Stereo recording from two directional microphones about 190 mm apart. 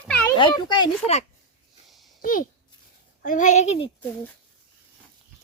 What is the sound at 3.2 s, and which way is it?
Speech, 40° left (ahead or behind).